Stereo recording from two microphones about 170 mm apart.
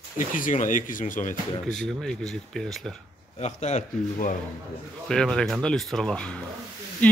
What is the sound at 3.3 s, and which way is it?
Speech, 40° left (ahead or behind).